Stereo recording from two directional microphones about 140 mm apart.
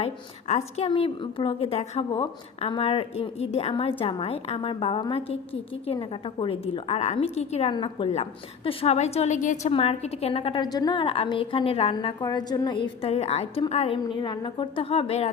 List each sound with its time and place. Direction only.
0.0 s a woman's voice: 50° left (ahead or behind)
0.9 s a woman's voice: 40° left (ahead or behind)
7.7 s a woman's voice: 35° left (ahead or behind)
8.1 s a woman's voice: 45° left (ahead or behind); by 9.7 s 65° left (ahead or behind)
9.7 s a woman's voice: 45° left (ahead or behind)
12.2 s a woman's voice: 30° left (ahead or behind)